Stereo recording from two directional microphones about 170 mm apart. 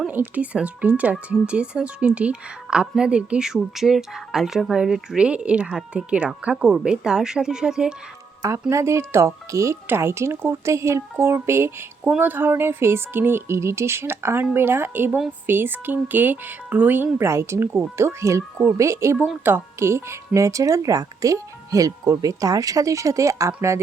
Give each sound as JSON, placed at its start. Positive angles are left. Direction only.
{"t": 0.0, "sound": "speech", "side_deg": -10}
{"t": 8.4, "sound": "speech", "side_deg": -20}